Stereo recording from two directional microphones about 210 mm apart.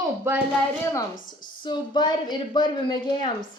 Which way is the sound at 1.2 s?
20° left (ahead or behind).